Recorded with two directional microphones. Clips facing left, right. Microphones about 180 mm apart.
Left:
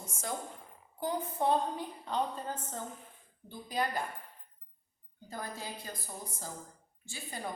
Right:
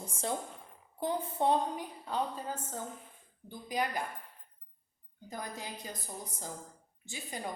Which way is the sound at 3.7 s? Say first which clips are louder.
Even; 15° right (ahead or behind).